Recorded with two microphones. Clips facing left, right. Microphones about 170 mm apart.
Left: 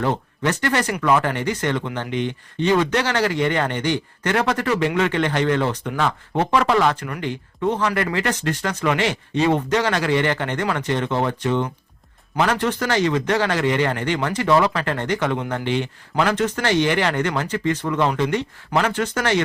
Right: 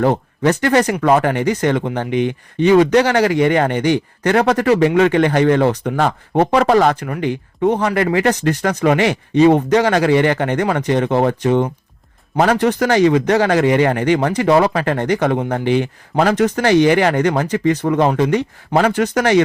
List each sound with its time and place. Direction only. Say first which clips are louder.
0.0 s speech: right 7 dB; 45° right (ahead or behind)
2.0 s speech: right 6 dB; 10° right (ahead or behind)
2.9 s speech: right 7 dB; 45° right (ahead or behind)